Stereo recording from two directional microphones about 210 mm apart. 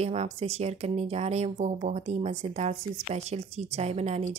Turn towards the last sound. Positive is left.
turn(degrees=-30)  # may be behind; listen again after turning